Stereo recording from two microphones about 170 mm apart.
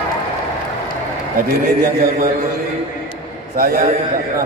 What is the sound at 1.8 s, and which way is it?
Speech, 55° right (ahead or behind).